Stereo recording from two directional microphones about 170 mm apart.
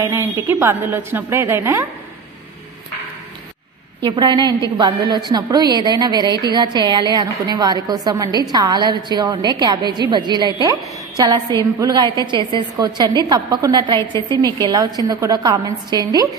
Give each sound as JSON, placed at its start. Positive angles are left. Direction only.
{"t": 0.0, "sound": "a woman's voice", "side_deg": -15}
{"t": 4.0, "sound": "a woman's voice", "side_deg": -25}